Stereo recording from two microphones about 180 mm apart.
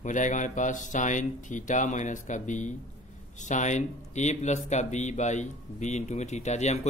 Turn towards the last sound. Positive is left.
turn(degrees=40)  # may be behind; listen again after turning